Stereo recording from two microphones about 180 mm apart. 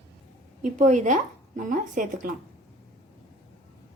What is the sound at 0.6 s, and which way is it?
Speech, 45° right (ahead or behind).